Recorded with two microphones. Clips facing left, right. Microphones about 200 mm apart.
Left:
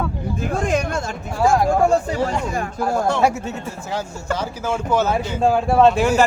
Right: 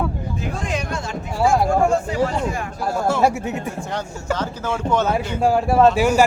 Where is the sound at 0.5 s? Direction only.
50° left (ahead or behind).